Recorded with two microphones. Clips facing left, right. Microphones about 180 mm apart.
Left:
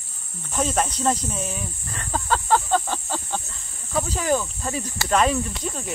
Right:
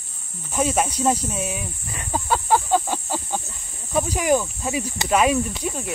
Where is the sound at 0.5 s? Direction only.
10° right (ahead or behind).